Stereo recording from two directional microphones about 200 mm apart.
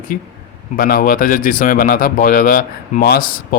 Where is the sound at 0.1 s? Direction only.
45° left (ahead or behind).